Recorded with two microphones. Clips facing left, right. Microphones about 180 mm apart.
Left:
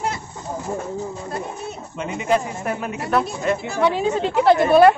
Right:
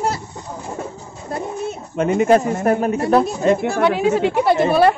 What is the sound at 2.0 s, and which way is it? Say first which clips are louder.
A woman's voice: right 7 dB; 50° right (ahead or behind).